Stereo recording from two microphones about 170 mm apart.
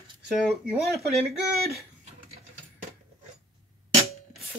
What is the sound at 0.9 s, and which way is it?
Speech, centre (ahead or behind).